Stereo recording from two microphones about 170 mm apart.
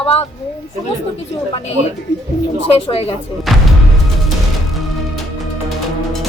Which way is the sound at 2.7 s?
35° left (ahead or behind).